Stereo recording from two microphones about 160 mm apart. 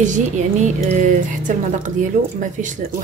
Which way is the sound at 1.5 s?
55° right (ahead or behind).